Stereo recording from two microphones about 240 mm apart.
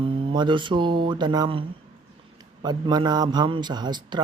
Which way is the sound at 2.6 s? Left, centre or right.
Centre.